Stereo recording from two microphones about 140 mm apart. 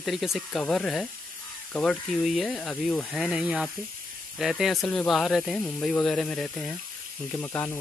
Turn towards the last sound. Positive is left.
turn(degrees=15)  # may be behind; listen again after turning